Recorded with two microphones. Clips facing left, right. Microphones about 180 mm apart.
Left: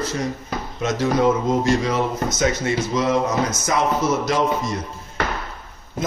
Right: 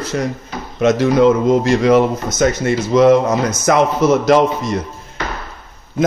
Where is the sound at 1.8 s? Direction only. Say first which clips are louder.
Right 9 dB; 70° right (ahead or behind).